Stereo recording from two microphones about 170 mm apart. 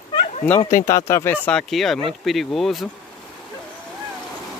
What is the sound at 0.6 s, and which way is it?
Speech, 15° left (ahead or behind).